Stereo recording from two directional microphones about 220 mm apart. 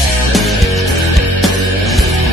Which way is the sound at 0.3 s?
Centre (ahead or behind).